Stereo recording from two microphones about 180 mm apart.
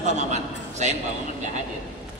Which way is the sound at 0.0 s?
40° right (ahead or behind).